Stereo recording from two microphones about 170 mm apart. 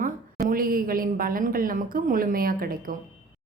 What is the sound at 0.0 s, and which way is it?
A woman's voice, 55° right (ahead or behind).